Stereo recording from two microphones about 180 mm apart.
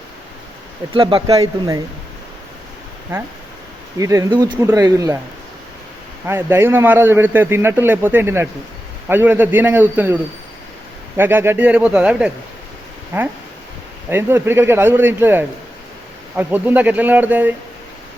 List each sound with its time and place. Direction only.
0.9 s speech: 25° right (ahead or behind)
3.9 s a man's voice: 20° right (ahead or behind)
6.2 s a man's voice: 15° right (ahead or behind)
11.2 s a man's voice: 10° right (ahead or behind)